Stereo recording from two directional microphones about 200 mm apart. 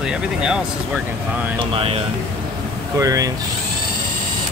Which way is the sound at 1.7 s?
30° right (ahead or behind).